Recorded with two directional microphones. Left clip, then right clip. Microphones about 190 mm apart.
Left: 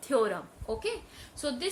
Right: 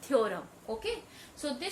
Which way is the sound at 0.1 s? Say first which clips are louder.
Left 1 dB; 40° left (ahead or behind).